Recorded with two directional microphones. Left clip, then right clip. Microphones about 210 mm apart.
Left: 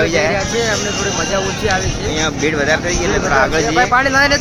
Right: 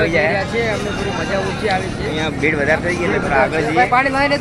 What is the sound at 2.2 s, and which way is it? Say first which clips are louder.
Speech: left 1 dB; 5° left (ahead or behind).